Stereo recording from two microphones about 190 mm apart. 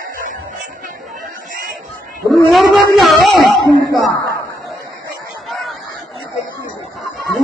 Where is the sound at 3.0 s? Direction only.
Centre (ahead or behind).